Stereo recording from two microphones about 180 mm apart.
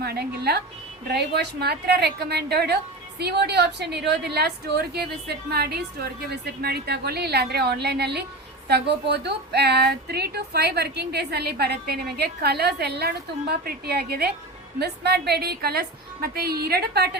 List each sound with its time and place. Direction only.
0.0 s a woman's voice: 60° right (ahead or behind)